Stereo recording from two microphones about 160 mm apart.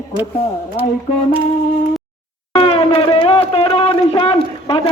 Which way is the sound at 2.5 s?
35° left (ahead or behind).